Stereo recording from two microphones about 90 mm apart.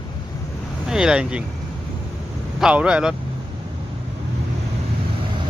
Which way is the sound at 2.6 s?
10° right (ahead or behind).